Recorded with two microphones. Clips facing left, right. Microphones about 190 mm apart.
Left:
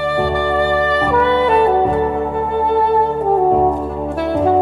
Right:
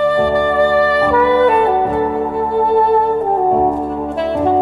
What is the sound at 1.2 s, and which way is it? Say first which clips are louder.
Saxophone: right 1 dB; centre (ahead or behind).